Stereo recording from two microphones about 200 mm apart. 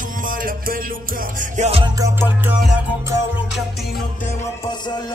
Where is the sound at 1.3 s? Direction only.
35° right (ahead or behind).